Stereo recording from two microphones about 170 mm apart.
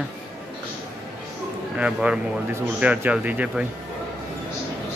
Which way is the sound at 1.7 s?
5° right (ahead or behind).